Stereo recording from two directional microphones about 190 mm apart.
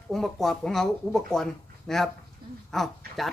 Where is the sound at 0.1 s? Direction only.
Centre (ahead or behind).